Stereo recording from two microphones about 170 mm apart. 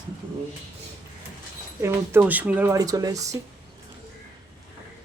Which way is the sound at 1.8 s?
10° right (ahead or behind).